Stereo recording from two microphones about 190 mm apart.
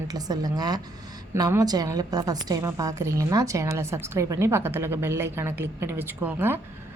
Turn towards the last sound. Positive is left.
turn(degrees=-10)  # may be behind; listen again after turning